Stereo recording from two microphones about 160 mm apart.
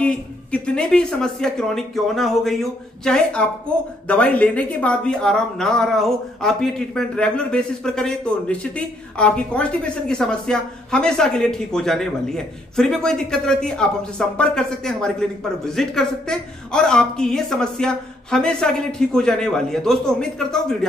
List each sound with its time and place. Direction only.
0.0 s speech: 5° left (ahead or behind)